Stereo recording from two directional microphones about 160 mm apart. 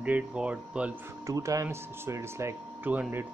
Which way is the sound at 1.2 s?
20° right (ahead or behind).